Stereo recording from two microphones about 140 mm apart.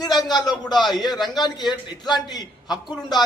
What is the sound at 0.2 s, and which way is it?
Speech, 30° left (ahead or behind).